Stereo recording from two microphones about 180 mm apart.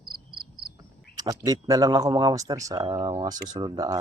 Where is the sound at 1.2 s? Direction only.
20° right (ahead or behind).